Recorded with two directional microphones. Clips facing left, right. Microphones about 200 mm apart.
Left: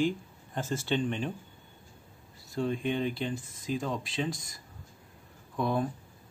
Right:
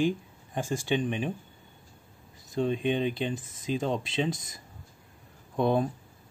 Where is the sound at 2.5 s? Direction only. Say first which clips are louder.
Right 3 dB; 20° right (ahead or behind).